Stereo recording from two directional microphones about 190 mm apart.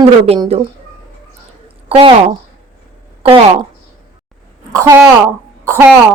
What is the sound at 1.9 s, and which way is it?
Speech, 30° right (ahead or behind).